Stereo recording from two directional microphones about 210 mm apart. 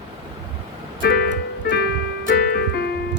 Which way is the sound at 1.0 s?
50° left (ahead or behind).